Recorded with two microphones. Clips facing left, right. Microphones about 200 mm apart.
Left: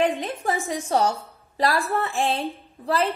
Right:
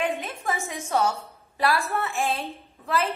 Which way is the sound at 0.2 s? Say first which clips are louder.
Left 4 dB; 35° left (ahead or behind).